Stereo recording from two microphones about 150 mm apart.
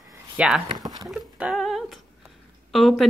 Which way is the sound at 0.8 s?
25° right (ahead or behind).